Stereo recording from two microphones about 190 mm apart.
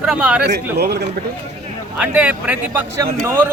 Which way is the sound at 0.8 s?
60° right (ahead or behind).